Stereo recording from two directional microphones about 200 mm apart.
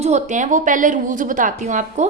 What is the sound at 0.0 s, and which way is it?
A woman's voice, 35° right (ahead or behind).